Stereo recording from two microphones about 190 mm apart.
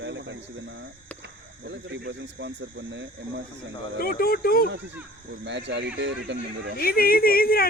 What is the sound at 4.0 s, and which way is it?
Speech, 50° left (ahead or behind).